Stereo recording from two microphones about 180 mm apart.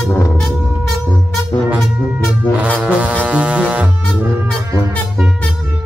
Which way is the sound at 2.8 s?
5° right (ahead or behind).